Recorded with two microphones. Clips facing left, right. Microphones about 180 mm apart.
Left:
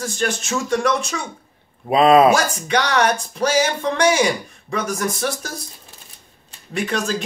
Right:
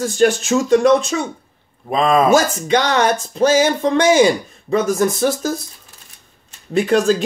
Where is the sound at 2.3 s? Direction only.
25° right (ahead or behind).